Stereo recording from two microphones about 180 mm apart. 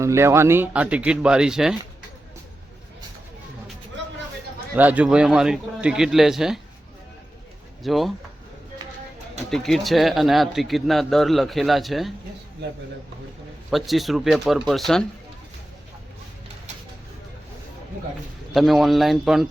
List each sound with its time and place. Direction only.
0.0 s speech: 15° right (ahead or behind)
4.7 s a man's voice: 10° right (ahead or behind)
7.9 s a man's voice: centre (ahead or behind)
9.5 s a man's voice: centre (ahead or behind)
12.6 s speech: 65° right (ahead or behind)
13.7 s a man's voice: centre (ahead or behind)
18.5 s a man's voice: centre (ahead or behind)